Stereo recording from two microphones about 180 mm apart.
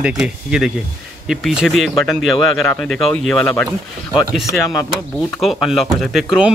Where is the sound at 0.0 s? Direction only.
5° right (ahead or behind).